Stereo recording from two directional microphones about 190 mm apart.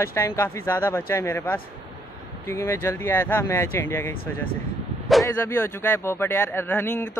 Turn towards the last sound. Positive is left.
turn(degrees=10)  # may be behind; listen again after turning